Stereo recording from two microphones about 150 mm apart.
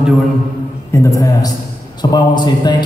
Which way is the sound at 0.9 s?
20° left (ahead or behind).